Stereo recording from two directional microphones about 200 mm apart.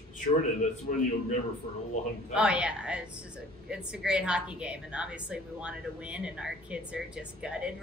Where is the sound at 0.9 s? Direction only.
40° left (ahead or behind).